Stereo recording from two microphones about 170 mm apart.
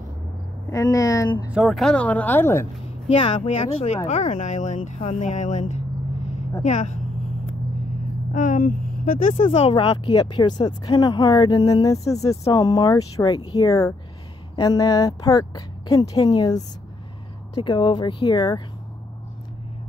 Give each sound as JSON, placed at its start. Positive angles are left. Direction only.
{"t": 0.7, "sound": "speech", "side_deg": 20}
{"t": 1.5, "sound": "speech", "side_deg": 0}
{"t": 2.8, "sound": "speech", "side_deg": 35}
{"t": 8.3, "sound": "speech", "side_deg": 50}
{"t": 9.4, "sound": "speech", "side_deg": 35}